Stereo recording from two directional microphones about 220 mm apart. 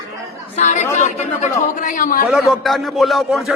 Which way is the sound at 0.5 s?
35° left (ahead or behind).